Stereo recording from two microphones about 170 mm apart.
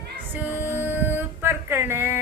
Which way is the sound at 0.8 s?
10° right (ahead or behind).